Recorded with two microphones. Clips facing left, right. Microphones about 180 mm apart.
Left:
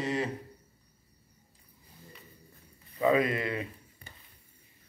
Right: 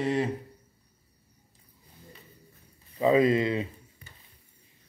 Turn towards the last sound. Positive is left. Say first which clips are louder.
# right 6 dB
turn(degrees=-25)  # may be behind; listen again after turning